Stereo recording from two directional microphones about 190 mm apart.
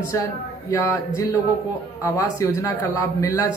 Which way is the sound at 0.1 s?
15° left (ahead or behind).